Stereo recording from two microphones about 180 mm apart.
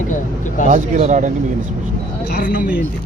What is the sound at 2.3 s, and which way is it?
Speech, 50° left (ahead or behind).